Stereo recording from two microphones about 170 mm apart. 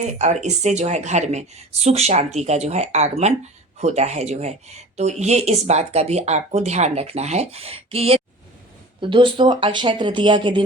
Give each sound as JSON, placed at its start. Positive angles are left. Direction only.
{"t": 0.0, "sound": "speech", "side_deg": -40}